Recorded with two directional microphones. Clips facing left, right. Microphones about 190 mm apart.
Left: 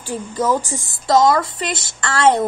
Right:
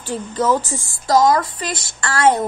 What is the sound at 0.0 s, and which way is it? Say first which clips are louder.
Speech: right 1 dB; 10° left (ahead or behind).